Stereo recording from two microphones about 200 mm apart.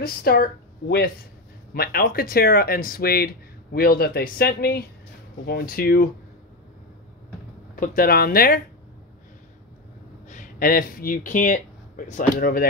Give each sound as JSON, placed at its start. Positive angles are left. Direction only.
{"t": 0.0, "sound": "speech", "side_deg": 50}
{"t": 7.7, "sound": "speech", "side_deg": 45}
{"t": 10.3, "sound": "speech", "side_deg": 45}